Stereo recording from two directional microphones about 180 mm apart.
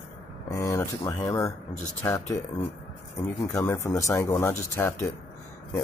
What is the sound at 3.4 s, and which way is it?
Speech, 15° left (ahead or behind).